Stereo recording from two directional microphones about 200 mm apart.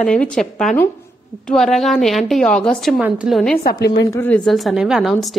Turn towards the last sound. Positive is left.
turn(degrees=0)  # may be behind; listen again after turning